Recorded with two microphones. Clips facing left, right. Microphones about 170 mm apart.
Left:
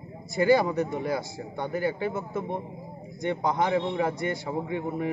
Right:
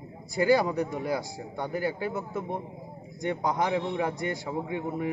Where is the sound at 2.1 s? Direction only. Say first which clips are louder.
Left 1 dB; 20° left (ahead or behind).